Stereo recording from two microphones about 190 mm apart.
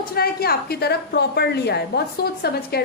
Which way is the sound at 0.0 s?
55° left (ahead or behind).